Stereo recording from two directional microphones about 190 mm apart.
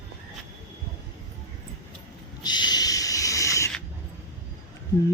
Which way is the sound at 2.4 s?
20° left (ahead or behind).